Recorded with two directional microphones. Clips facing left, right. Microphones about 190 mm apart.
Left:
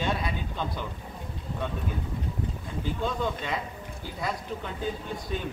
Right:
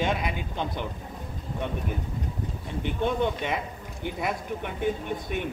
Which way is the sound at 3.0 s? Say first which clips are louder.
Right 5 dB; 20° right (ahead or behind).